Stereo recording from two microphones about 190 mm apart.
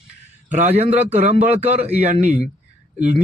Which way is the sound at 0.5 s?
35° right (ahead or behind).